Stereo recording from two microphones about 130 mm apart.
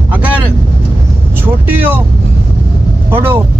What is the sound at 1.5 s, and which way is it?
Speech, 15° right (ahead or behind).